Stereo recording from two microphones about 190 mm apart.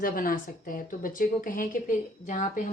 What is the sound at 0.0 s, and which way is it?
Speech, 50° left (ahead or behind).